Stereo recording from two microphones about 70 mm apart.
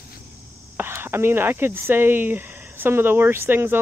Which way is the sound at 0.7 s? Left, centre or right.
Right.